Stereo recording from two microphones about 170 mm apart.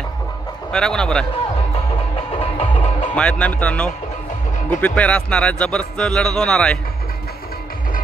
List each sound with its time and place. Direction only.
0.7 s speech: 5° left (ahead or behind)
2.1 s music: 35° left (ahead or behind)
3.2 s speech: 5° left (ahead or behind)